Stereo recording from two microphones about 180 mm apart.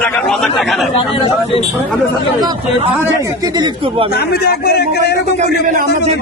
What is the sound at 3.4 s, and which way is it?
Speech, 25° right (ahead or behind).